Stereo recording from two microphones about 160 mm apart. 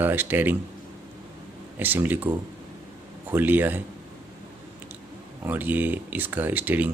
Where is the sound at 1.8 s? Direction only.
10° right (ahead or behind).